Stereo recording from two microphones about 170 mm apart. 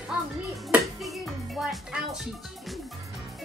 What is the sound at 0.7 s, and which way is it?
Speech, centre (ahead or behind).